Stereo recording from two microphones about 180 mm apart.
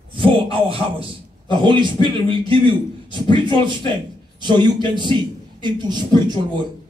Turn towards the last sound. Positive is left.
turn(degrees=-25)  # may be behind; listen again after turning